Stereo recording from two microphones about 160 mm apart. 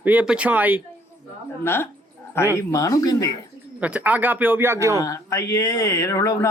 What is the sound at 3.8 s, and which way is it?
Speech, 10° right (ahead or behind).